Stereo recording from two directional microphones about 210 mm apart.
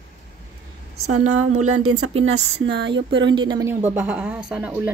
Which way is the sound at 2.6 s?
60° right (ahead or behind).